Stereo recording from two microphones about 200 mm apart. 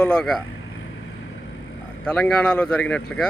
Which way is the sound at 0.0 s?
5° left (ahead or behind).